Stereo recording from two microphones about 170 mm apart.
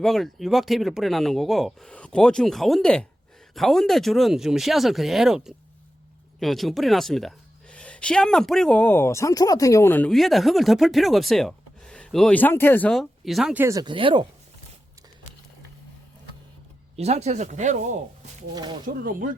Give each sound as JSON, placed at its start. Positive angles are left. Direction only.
{"t": 0.0, "sound": "speech", "side_deg": 0}
{"t": 17.0, "sound": "speech", "side_deg": -40}
{"t": 18.5, "sound": "speech", "side_deg": -25}
{"t": 19.0, "sound": "speech", "side_deg": -55}